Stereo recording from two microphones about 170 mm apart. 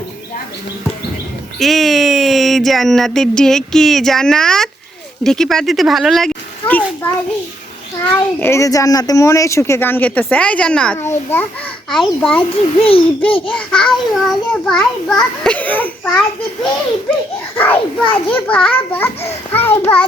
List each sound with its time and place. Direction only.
1.5 s a child's voice: centre (ahead or behind)
8.1 s speech: 15° left (ahead or behind)
11.9 s a child's voice: 5° left (ahead or behind)
12.8 s babbling: 35° left (ahead or behind)
13.6 s speech: 5° left (ahead or behind)
18.1 s speech: 10° left (ahead or behind)